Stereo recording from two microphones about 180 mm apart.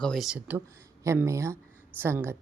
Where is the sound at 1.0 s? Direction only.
15° right (ahead or behind).